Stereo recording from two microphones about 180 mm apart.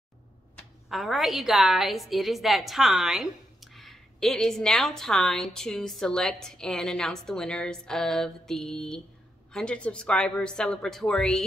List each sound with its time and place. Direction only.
0.8 s a woman's voice: centre (ahead or behind)